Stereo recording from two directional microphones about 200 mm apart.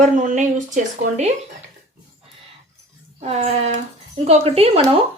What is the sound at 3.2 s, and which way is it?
Speech, 35° right (ahead or behind).